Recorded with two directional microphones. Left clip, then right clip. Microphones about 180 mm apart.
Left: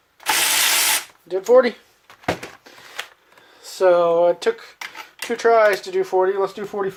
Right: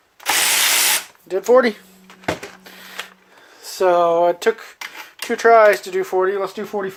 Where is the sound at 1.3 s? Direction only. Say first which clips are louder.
Right 1 dB; 45° right (ahead or behind).